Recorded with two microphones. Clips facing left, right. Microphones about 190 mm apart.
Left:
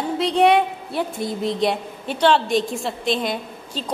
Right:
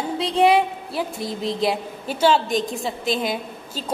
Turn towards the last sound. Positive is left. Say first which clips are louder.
# left 1 dB
turn(degrees=-5)  # may be behind; listen again after turning